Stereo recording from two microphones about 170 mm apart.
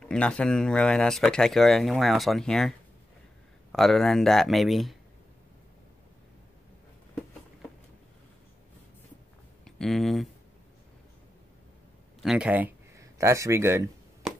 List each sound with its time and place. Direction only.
0.0 s speech: 5° left (ahead or behind)
3.7 s speech: centre (ahead or behind)
9.7 s speech: centre (ahead or behind)
12.2 s speech: 5° right (ahead or behind)